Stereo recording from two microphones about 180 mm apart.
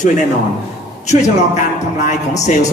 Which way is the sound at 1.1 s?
40° left (ahead or behind).